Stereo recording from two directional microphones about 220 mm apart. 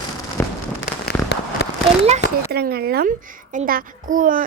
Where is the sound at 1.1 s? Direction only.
45° left (ahead or behind).